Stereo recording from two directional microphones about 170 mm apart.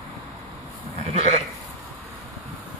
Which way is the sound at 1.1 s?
40° right (ahead or behind).